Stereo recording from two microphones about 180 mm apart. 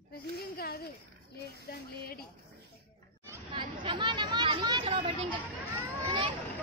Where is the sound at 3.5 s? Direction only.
25° right (ahead or behind).